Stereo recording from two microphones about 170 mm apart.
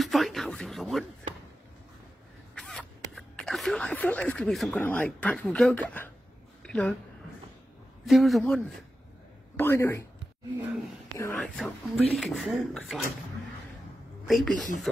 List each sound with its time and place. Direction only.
0.0 s a sound: centre (ahead or behind)
2.5 s zipper: 5° left (ahead or behind)
6.6 s speech: 5° left (ahead or behind)
8.0 s speech: centre (ahead or behind)
9.6 s speech: 10° left (ahead or behind)
11.1 s speech: 10° left (ahead or behind)
14.2 s speech: centre (ahead or behind)